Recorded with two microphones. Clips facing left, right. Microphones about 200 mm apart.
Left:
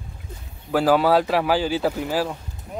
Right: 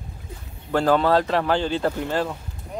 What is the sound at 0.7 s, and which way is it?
Speech, 5° left (ahead or behind).